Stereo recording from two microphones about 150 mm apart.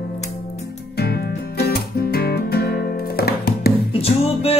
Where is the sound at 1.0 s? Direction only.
90° left.